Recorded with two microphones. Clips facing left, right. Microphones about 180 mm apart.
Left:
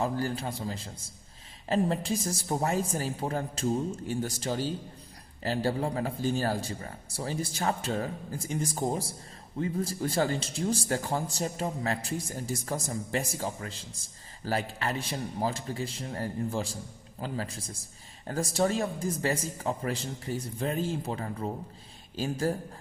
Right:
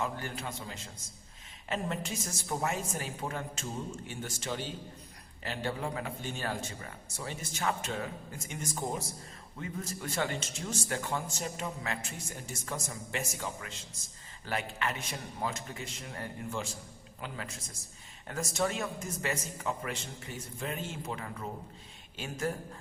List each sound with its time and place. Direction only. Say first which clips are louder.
0.0 s a man's voice: left 6 dB; 35° left (ahead or behind)